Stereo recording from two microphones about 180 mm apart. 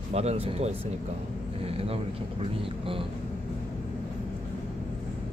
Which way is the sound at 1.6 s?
30° right (ahead or behind).